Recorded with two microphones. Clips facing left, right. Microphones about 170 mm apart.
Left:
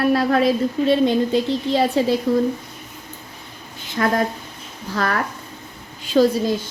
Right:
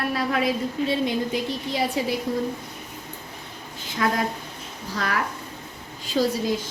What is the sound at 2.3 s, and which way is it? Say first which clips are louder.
Speech: left 8 dB; 75° left (ahead or behind).